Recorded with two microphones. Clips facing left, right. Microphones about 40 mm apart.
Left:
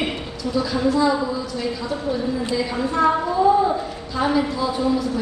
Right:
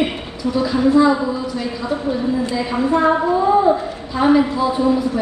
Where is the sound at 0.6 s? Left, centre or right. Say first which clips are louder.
Right 5 dB; right.